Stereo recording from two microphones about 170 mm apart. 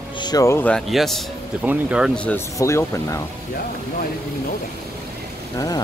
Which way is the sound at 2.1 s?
10° left (ahead or behind).